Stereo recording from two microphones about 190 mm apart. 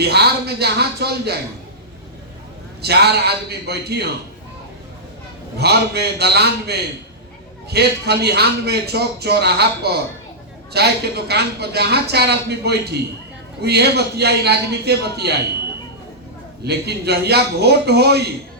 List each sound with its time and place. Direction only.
0.0 s a man's voice: 60° right (ahead or behind)
2.8 s a man's voice: 60° right (ahead or behind)
5.5 s a man's voice: 60° right (ahead or behind)
16.6 s a man's voice: 60° right (ahead or behind)